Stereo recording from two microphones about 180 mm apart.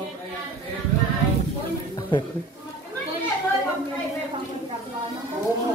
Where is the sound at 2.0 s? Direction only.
25° left (ahead or behind).